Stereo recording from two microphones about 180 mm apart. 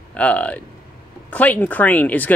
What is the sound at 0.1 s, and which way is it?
Speech, 5° left (ahead or behind).